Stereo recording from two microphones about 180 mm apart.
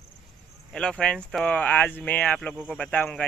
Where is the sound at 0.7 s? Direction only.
5° left (ahead or behind).